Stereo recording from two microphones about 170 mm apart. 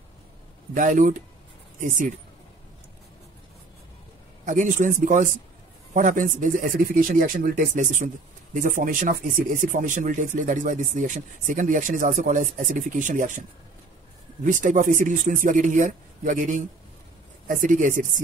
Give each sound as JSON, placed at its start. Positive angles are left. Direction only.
{"t": 0.7, "sound": "speech", "side_deg": -50}
{"t": 4.5, "sound": "speech", "side_deg": -50}
{"t": 14.4, "sound": "speech", "side_deg": -50}